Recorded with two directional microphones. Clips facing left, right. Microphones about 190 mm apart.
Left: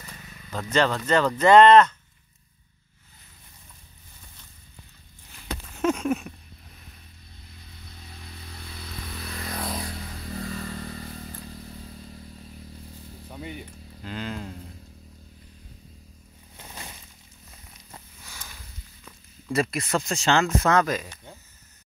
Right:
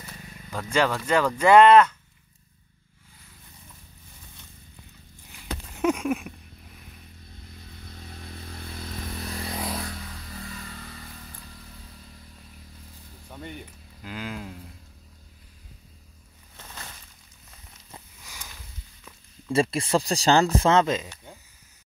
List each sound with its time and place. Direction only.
0.5 s speech: 10° right (ahead or behind)
5.8 s a sound: 15° right (ahead or behind)
7.9 s motorcycle: 45° right (ahead or behind)
9.5 s vehicle: 5° right (ahead or behind)
10.3 s vehicle: 40° left (ahead or behind)
13.3 s speech: 5° left (ahead or behind)
13.7 s a sound: 10° right (ahead or behind)
16.5 s a sound: 15° left (ahead or behind)
19.5 s speech: 30° right (ahead or behind)